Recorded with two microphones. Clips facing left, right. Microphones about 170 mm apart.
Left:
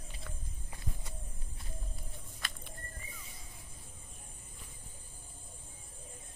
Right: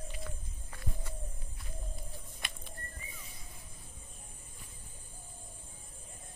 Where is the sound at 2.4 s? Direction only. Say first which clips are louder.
Even; 20° right (ahead or behind).